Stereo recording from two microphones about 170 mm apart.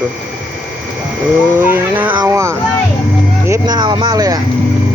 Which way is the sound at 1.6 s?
10° right (ahead or behind).